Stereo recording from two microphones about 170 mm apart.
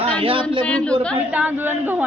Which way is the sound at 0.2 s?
30° right (ahead or behind).